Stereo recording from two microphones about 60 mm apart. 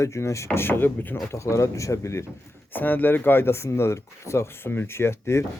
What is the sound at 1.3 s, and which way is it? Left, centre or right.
Speech, left.